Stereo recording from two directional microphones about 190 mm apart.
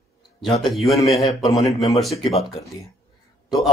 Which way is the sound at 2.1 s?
25° left (ahead or behind).